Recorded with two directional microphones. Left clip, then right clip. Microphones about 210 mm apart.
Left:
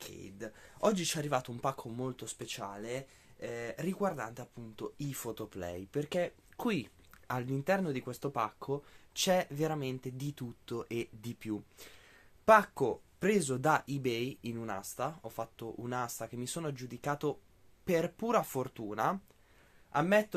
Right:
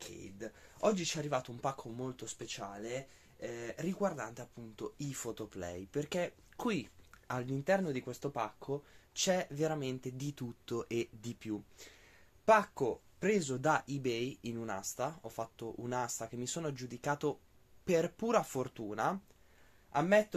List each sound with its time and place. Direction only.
0.0 s speech: 35° left (ahead or behind); by 11.1 s 5° left (ahead or behind)
11.1 s speech: 15° left (ahead or behind)
19.9 s speech: 25° left (ahead or behind)